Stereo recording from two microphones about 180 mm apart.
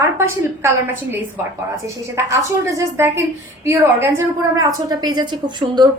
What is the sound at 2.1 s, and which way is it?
A woman's voice, 15° right (ahead or behind).